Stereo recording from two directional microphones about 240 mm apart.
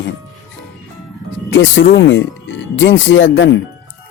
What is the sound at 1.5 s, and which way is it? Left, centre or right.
Speech, left.